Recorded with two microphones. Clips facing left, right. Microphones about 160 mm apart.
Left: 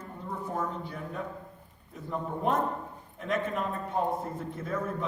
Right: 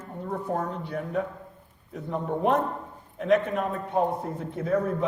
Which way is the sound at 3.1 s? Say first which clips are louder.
Right 8 dB; 65° right (ahead or behind).